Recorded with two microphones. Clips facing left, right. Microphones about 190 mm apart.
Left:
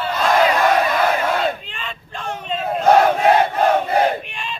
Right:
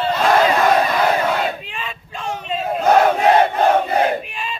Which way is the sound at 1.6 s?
5° right (ahead or behind).